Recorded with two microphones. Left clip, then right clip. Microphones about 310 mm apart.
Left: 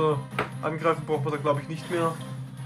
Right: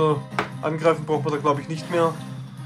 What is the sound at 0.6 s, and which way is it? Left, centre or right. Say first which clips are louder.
A man's voice: right 5 dB; centre.